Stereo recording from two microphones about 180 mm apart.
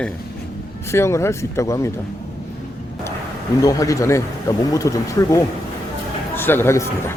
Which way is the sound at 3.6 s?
20° left (ahead or behind).